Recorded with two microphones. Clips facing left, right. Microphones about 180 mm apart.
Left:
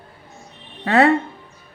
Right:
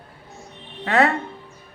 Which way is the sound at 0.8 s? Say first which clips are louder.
Left 3 dB; 35° left (ahead or behind).